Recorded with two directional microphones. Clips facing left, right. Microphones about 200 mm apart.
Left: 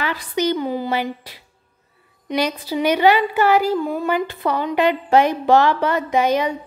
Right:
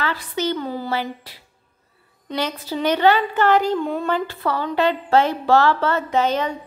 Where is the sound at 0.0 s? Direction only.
15° left (ahead or behind).